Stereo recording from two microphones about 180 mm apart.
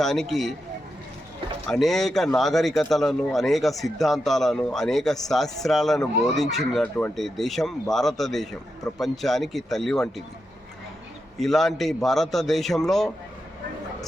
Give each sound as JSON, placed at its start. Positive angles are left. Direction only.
{"t": 0.0, "sound": "speech", "side_deg": 0}
{"t": 1.6, "sound": "speech", "side_deg": 5}
{"t": 11.3, "sound": "speech", "side_deg": 0}